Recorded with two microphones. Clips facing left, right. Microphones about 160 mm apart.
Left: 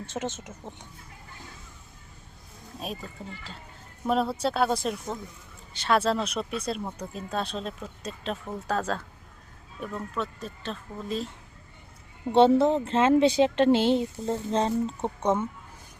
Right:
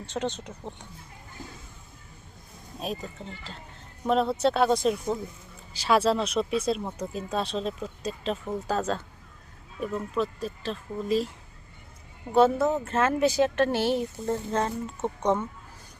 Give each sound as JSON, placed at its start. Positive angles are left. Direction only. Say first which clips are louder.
{"t": 0.1, "sound": "speech", "louder": "right 2 dB", "side_deg": 10}
{"t": 2.7, "sound": "speech", "louder": "right 3 dB", "side_deg": 0}
{"t": 4.0, "sound": "speech", "louder": "right 2 dB", "side_deg": 5}
{"t": 10.4, "sound": "speech", "louder": "right 3 dB", "side_deg": 0}
{"t": 12.3, "sound": "speech", "louder": "left 2 dB", "side_deg": 30}
{"t": 15.0, "sound": "speech", "louder": "right 4 dB", "side_deg": 10}